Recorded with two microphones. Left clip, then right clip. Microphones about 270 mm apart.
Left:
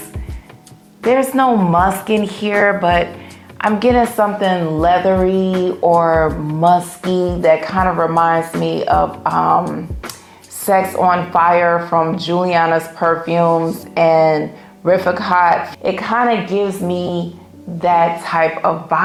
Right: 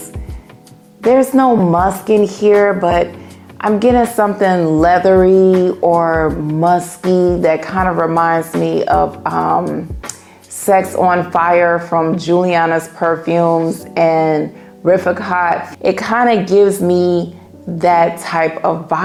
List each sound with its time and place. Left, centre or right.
1.0 s a woman's voice: right
4.4 s a woman's voice: right
10.7 s speech: right
15.8 s a woman's voice: right